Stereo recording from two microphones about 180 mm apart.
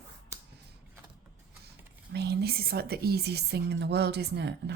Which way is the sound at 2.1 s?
65° right (ahead or behind).